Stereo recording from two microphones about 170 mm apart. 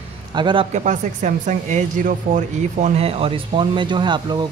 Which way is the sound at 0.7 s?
45° right (ahead or behind).